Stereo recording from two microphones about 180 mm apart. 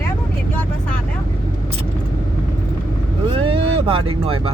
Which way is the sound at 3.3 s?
30° right (ahead or behind).